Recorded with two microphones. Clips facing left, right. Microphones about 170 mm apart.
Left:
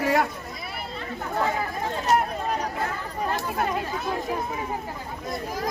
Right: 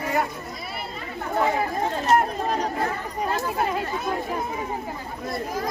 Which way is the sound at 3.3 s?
5° right (ahead or behind).